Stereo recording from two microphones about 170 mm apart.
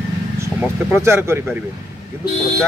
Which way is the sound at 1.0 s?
15° right (ahead or behind).